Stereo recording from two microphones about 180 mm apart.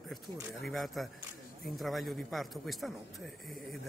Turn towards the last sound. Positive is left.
turn(degrees=0)  # may be behind; listen again after turning